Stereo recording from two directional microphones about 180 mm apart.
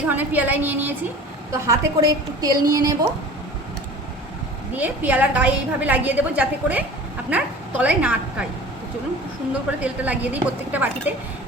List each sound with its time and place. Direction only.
0.1 s a woman's voice: 10° right (ahead or behind)
4.7 s a woman's voice: 10° right (ahead or behind)
9.8 s a woman's voice: 10° right (ahead or behind)